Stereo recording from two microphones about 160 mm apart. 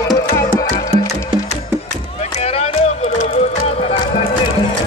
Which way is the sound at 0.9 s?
40° right (ahead or behind).